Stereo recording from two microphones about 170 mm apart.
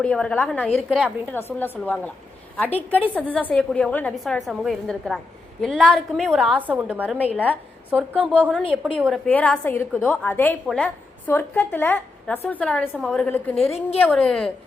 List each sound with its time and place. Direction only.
0.0 s a woman's voice: 5° left (ahead or behind)
0.8 s a woman's voice: centre (ahead or behind)
1.3 s a woman's voice: 10° left (ahead or behind)
13.7 s a woman's voice: 35° left (ahead or behind)
14.0 s a woman's voice: 5° left (ahead or behind)